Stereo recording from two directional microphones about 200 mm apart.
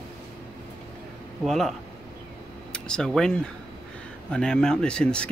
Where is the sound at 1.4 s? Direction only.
Centre (ahead or behind).